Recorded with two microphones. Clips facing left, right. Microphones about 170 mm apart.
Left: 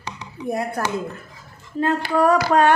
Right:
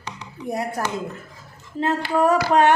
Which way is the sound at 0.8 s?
25° right (ahead or behind).